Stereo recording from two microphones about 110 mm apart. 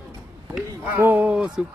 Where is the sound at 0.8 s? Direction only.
15° right (ahead or behind).